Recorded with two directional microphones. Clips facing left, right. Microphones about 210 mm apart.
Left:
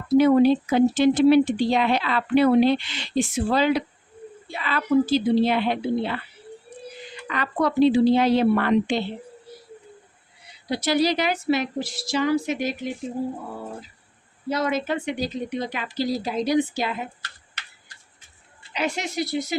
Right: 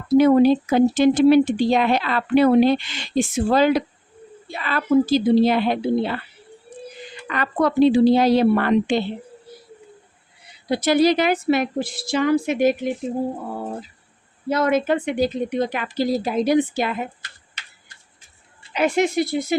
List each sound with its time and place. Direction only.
0.1 s a woman's voice: 45° right (ahead or behind)
7.3 s speech: 50° right (ahead or behind)
8.0 s a woman's voice: 35° right (ahead or behind)
10.7 s speech: 50° right (ahead or behind)
14.5 s speech: 55° right (ahead or behind)
18.7 s speech: 55° right (ahead or behind)